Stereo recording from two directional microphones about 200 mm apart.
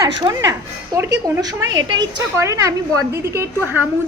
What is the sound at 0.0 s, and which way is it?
A woman's voice, 20° right (ahead or behind).